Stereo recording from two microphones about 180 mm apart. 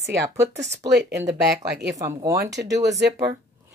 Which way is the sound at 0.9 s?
70° right (ahead or behind).